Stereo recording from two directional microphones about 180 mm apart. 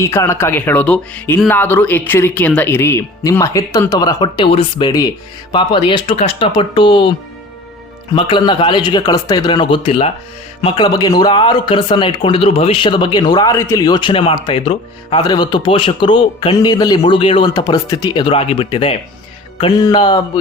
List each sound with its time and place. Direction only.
0.0 s speech: 15° left (ahead or behind)
8.1 s speech: 25° left (ahead or behind)